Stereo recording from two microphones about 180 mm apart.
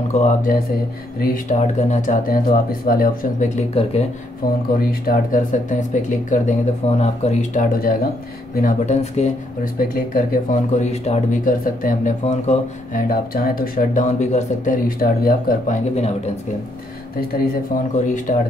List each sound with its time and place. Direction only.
0.1 s speech: 45° left (ahead or behind)
3.8 s speech: 35° left (ahead or behind)
4.7 s speech: 55° left (ahead or behind)
9.8 s speech: 55° left (ahead or behind); by 11.5 s 35° left (ahead or behind)
11.6 s speech: 50° left (ahead or behind)
13.1 s speech: 55° left (ahead or behind)
17.9 s speech: 45° left (ahead or behind)